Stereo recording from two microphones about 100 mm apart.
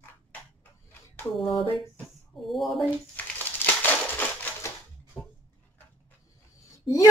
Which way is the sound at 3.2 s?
15° left (ahead or behind).